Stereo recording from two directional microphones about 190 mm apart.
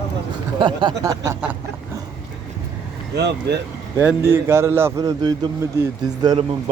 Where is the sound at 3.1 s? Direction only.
60° right (ahead or behind).